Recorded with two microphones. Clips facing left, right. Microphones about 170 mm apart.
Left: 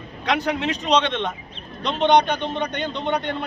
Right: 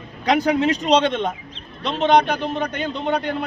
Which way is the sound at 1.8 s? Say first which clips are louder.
Right 1 dB; 5° right (ahead or behind).